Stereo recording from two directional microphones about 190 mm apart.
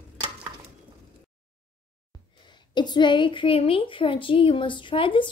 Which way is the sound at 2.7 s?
25° left (ahead or behind).